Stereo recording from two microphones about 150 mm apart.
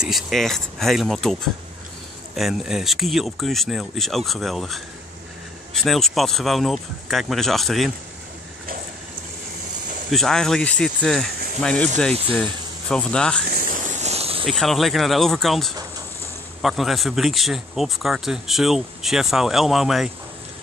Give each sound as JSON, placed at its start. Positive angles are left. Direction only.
{"t": 0.0, "sound": "speech", "side_deg": 0}
{"t": 10.1, "sound": "speech", "side_deg": 5}
{"t": 12.9, "sound": "speech", "side_deg": 5}
{"t": 13.5, "sound": "snake", "side_deg": -85}
{"t": 13.9, "sound": "insect", "side_deg": -45}
{"t": 14.4, "sound": "speech", "side_deg": 0}